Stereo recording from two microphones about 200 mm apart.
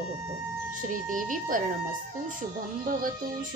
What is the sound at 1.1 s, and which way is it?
Speech, 40° right (ahead or behind).